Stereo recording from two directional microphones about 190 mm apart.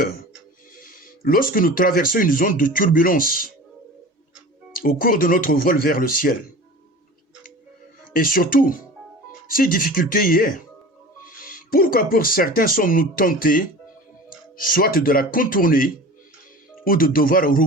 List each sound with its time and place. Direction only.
0.8 s speech: 50° left (ahead or behind)
4.7 s speech: 50° left (ahead or behind)
8.1 s speech: 50° left (ahead or behind)